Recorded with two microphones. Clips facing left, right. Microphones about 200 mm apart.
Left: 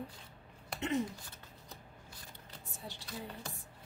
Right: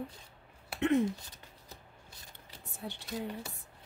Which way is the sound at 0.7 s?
60° right (ahead or behind).